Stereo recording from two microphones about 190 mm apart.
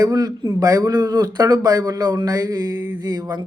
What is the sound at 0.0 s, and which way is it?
Speech, 20° right (ahead or behind).